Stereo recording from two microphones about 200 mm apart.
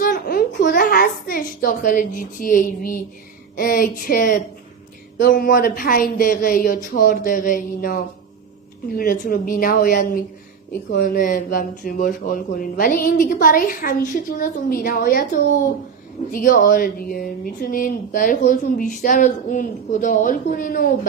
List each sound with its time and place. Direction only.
0.0 s a child's voice: 50° left (ahead or behind)